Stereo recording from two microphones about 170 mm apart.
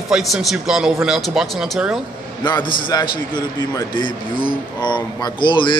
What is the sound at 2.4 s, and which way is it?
Speech, 25° left (ahead or behind).